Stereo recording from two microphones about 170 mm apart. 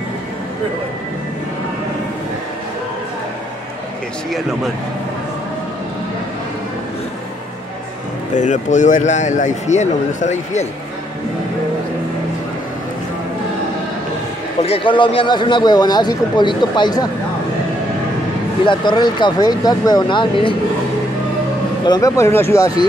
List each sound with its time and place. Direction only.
8.4 s speech: 45° left (ahead or behind)
14.6 s speech: 35° left (ahead or behind)
18.7 s speech: 25° left (ahead or behind)
21.8 s speech: 20° left (ahead or behind)